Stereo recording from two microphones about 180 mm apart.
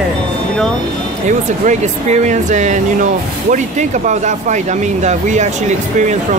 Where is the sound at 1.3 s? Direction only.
40° right (ahead or behind).